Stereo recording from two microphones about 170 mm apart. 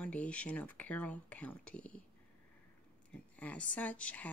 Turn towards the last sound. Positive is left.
turn(degrees=10)  # may be behind; listen again after turning